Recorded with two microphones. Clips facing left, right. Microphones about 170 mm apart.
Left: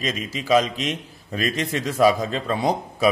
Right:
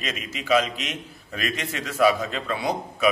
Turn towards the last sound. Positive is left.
turn(degrees=35)  # may be behind; listen again after turning